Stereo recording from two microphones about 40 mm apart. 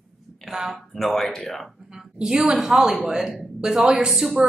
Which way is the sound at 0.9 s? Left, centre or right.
Centre.